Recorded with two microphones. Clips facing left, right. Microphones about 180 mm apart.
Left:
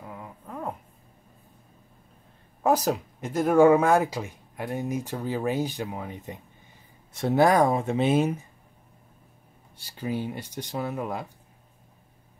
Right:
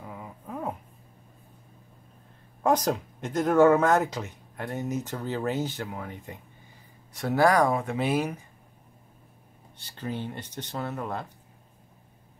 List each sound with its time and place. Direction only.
0.0 s dog: 5° right (ahead or behind)
2.6 s speech: 5° left (ahead or behind); by 8.5 s 25° left (ahead or behind)
9.8 s speech: 10° left (ahead or behind)